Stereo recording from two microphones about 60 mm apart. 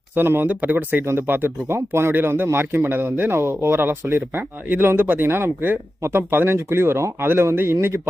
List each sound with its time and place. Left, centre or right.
0.2 s speech: right